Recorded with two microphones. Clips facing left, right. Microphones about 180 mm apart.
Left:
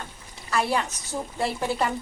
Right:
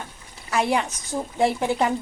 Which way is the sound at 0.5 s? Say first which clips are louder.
Right 3 dB; 15° right (ahead or behind).